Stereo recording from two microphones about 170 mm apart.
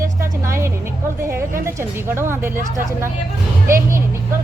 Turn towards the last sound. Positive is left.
turn(degrees=-15)  # may be behind; listen again after turning